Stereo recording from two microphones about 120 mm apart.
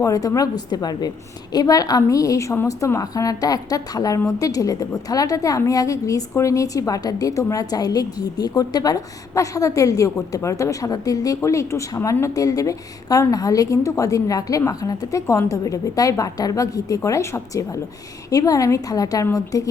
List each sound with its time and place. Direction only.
0.0 s a woman's voice: 30° left (ahead or behind)